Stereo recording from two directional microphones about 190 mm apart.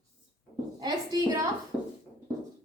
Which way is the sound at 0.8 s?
20° right (ahead or behind).